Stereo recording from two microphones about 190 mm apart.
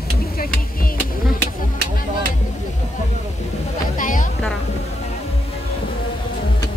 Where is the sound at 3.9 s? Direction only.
45° left (ahead or behind).